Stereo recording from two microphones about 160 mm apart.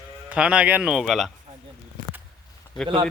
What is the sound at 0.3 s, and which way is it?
Speech, 5° right (ahead or behind).